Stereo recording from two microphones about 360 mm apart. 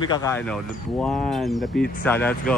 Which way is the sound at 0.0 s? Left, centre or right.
Centre.